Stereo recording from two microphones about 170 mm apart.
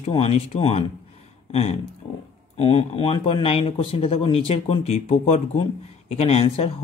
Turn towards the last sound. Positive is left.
turn(degrees=35)  # may be behind; listen again after turning